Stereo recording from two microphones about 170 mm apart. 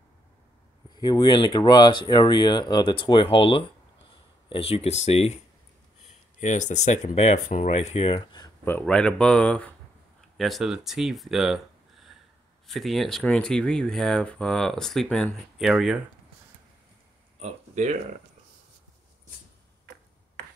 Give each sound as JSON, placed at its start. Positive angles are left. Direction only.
{"t": 0.8, "sound": "speech", "side_deg": 25}
{"t": 6.4, "sound": "speech", "side_deg": 45}
{"t": 8.6, "sound": "speech", "side_deg": 10}
{"t": 17.4, "sound": "a sound", "side_deg": -40}